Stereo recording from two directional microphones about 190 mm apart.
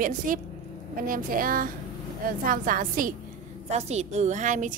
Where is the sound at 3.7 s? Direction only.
35° right (ahead or behind).